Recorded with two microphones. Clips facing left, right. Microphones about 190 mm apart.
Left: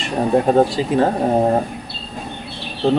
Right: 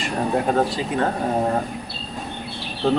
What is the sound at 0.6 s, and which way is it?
Speech, 30° left (ahead or behind).